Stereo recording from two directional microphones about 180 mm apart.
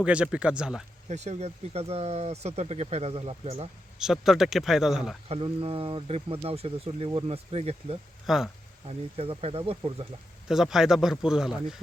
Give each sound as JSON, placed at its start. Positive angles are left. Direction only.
{"t": 0.0, "sound": "speech", "side_deg": -5}
{"t": 1.0, "sound": "speech", "side_deg": -40}
{"t": 3.9, "sound": "speech", "side_deg": 0}
{"t": 5.3, "sound": "speech", "side_deg": -30}
{"t": 8.3, "sound": "speech", "side_deg": 0}
{"t": 8.9, "sound": "speech", "side_deg": -35}
{"t": 10.5, "sound": "speech", "side_deg": 0}